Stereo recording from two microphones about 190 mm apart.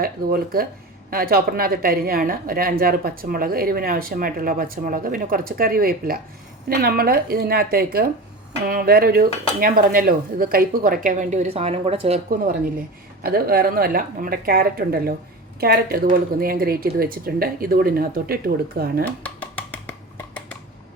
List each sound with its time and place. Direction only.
0.0 s speech: 50° right (ahead or behind); by 12.2 s 35° right (ahead or behind)
13.2 s speech: 55° right (ahead or behind)
19.2 s a sound: 5° left (ahead or behind)